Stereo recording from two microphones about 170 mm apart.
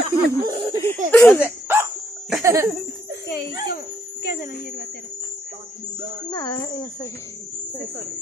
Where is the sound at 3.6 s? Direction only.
60° left (ahead or behind).